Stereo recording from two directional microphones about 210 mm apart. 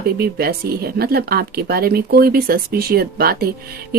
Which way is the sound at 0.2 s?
45° right (ahead or behind).